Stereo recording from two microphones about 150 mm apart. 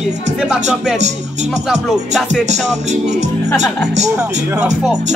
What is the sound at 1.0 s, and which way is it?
Music, 50° right (ahead or behind).